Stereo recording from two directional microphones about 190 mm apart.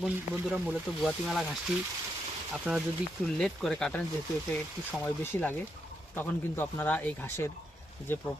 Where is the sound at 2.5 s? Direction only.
5° right (ahead or behind).